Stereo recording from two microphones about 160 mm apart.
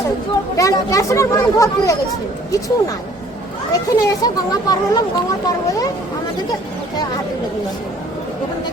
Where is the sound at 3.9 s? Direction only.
25° left (ahead or behind).